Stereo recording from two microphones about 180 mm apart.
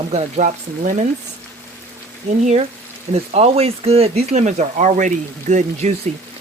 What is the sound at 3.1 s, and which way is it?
Speech, 35° right (ahead or behind).